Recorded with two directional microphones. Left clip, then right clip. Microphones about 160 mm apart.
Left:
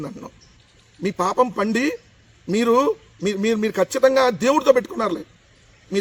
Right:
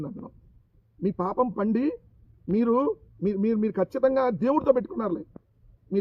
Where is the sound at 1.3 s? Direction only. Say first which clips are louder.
Left 7 dB; centre (ahead or behind).